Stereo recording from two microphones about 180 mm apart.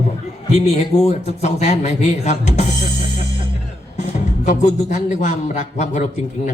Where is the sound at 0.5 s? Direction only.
35° left (ahead or behind).